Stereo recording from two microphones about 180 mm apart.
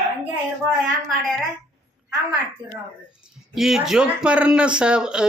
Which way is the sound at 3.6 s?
Centre (ahead or behind).